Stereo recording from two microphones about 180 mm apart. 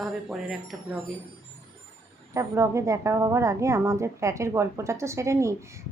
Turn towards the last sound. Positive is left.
turn(degrees=-15)  # may be behind; listen again after turning